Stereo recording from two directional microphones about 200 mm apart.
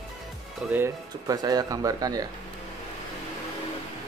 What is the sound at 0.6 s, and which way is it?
Speech, 10° right (ahead or behind).